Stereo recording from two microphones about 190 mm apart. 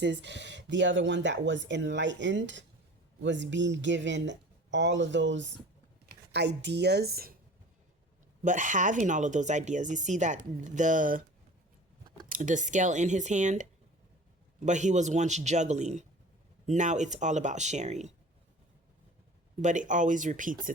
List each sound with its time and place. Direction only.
0.0 s a woman's voice: 65° right (ahead or behind)
8.4 s speech: 40° right (ahead or behind)
19.6 s speech: 40° right (ahead or behind)